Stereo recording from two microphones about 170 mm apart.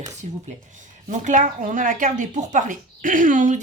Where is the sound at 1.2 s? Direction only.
45° right (ahead or behind).